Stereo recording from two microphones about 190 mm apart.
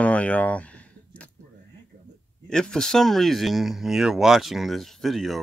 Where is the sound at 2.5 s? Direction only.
5° left (ahead or behind).